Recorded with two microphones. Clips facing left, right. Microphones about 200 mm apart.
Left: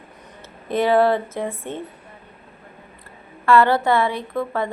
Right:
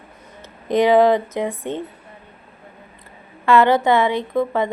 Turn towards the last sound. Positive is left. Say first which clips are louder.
# right 4 dB
turn(degrees=-20)  # may be behind; listen again after turning